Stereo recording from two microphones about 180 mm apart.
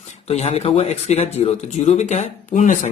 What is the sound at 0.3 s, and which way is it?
Speech, 35° left (ahead or behind).